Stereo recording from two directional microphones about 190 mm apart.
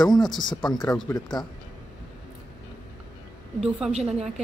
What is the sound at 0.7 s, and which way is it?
Speech, 20° left (ahead or behind).